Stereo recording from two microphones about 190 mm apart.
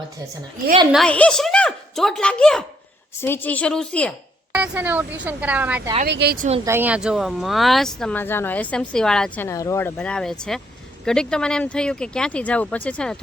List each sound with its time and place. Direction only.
0.9 s a woman's voice: centre (ahead or behind)
4.5 s speech: 5° right (ahead or behind)
6.1 s speech: 65° right (ahead or behind)
6.3 s speech: 45° right (ahead or behind)
6.7 s speech: 10° right (ahead or behind)